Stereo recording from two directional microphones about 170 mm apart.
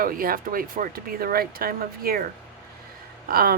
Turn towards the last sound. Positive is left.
turn(degrees=-60)  # may be behind; listen again after turning